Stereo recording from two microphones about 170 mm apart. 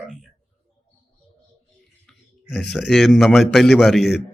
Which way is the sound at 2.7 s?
Centre (ahead or behind).